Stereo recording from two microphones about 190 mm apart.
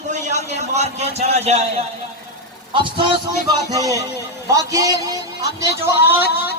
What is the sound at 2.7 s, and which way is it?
A man's voice, 25° right (ahead or behind).